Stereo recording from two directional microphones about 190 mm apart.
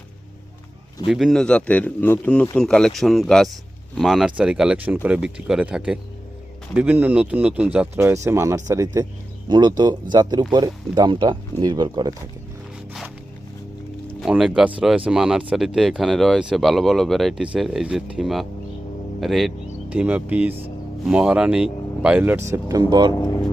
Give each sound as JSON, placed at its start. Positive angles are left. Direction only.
{"t": 1.0, "sound": "a man's voice", "side_deg": 0}
{"t": 14.2, "sound": "a man's voice", "side_deg": -5}